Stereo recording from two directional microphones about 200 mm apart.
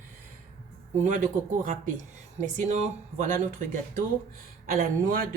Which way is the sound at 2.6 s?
35° right (ahead or behind).